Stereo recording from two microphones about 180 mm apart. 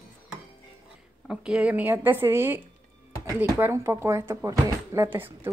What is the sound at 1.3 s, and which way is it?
Speech, 5° right (ahead or behind).